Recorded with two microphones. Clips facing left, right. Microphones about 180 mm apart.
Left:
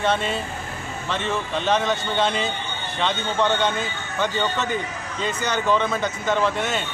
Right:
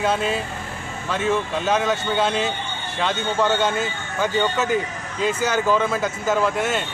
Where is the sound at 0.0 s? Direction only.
5° right (ahead or behind).